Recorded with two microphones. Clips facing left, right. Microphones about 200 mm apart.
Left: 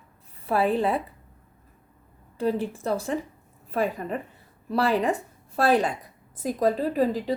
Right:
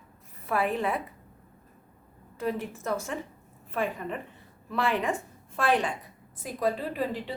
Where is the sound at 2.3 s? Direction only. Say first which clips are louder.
Left 5 dB; 30° left (ahead or behind).